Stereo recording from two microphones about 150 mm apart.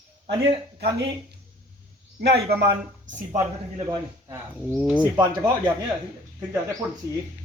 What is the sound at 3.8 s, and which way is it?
Speech, 20° right (ahead or behind).